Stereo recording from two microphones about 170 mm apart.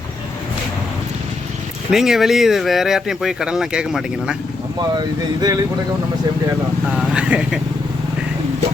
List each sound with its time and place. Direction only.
1.9 s speech: centre (ahead or behind)
4.9 s speech: 25° right (ahead or behind)
6.9 s speech: 5° right (ahead or behind)